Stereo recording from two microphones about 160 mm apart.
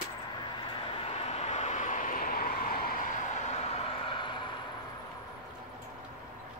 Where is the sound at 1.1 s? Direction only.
40° left (ahead or behind).